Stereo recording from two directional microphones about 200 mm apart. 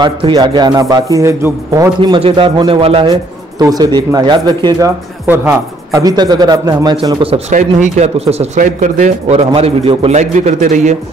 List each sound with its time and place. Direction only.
0.0 s speech: 20° right (ahead or behind)
2.0 s speech: 25° right (ahead or behind)
7.5 s a man's voice: 40° right (ahead or behind)